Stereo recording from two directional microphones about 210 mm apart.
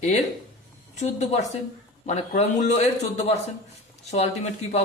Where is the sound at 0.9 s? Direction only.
35° left (ahead or behind).